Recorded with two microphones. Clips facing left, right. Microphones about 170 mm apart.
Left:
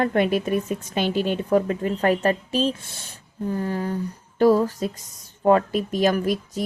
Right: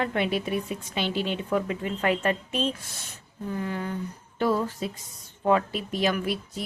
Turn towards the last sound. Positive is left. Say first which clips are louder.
# left 5 dB
turn(degrees=40)  # may be behind; listen again after turning